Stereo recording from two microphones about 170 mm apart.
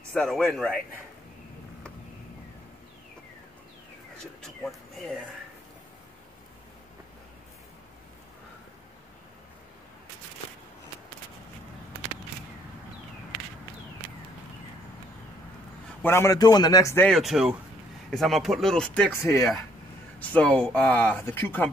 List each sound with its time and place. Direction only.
0.1 s speech: 5° left (ahead or behind)
4.4 s speech: centre (ahead or behind)
16.0 s a man's voice: 15° left (ahead or behind)
17.1 s speech: centre (ahead or behind)
19.2 s speech: 15° left (ahead or behind)